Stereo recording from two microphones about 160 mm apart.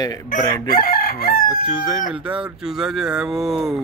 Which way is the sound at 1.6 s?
5° right (ahead or behind).